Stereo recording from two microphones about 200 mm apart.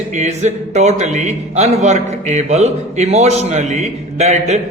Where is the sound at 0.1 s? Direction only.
35° right (ahead or behind).